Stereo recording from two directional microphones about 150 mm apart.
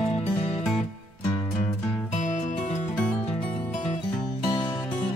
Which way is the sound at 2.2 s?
55° left (ahead or behind).